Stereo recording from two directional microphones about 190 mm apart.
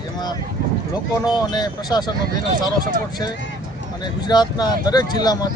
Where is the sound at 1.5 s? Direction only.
20° left (ahead or behind).